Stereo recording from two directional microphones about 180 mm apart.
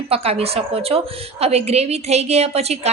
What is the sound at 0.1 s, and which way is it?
A woman's voice, 35° right (ahead or behind).